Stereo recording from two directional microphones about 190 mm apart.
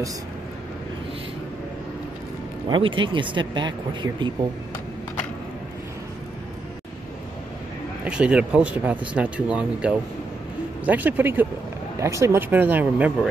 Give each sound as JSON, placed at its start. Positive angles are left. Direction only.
{"t": 2.7, "sound": "speech", "side_deg": -25}
{"t": 8.0, "sound": "speech", "side_deg": -5}